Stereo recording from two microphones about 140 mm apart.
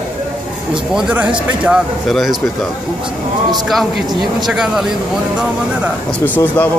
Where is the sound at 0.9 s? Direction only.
10° right (ahead or behind).